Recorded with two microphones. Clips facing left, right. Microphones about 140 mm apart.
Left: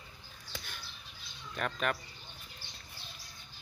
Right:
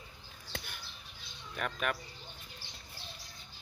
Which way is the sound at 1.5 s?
5° right (ahead or behind).